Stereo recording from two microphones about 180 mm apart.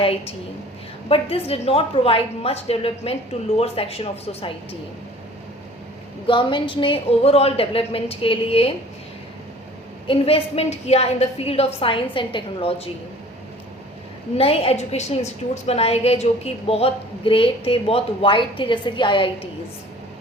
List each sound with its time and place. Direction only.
0.0 s a woman's voice: 30° left (ahead or behind)
6.2 s a woman's voice: 25° left (ahead or behind)
10.1 s a woman's voice: 30° left (ahead or behind)
14.3 s a woman's voice: 30° left (ahead or behind)